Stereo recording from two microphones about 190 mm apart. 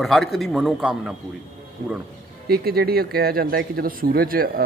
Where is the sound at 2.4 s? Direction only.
55° right (ahead or behind).